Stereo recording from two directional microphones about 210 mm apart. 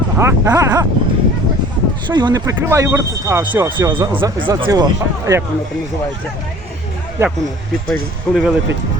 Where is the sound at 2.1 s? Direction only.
20° right (ahead or behind).